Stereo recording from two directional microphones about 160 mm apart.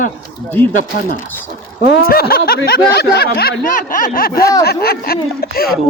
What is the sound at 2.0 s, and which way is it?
Speech, 70° left (ahead or behind).